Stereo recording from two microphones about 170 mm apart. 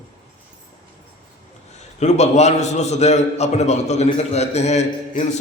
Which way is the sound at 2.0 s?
40° left (ahead or behind).